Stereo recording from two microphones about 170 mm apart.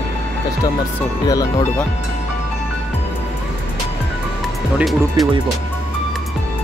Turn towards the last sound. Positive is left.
turn(degrees=0)  # may be behind; listen again after turning